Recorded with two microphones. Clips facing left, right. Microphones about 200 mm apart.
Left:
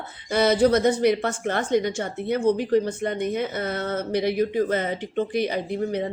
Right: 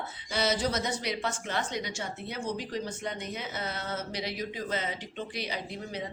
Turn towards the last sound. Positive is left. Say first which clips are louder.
# left 11 dB
turn(degrees=55)  # may be behind; listen again after turning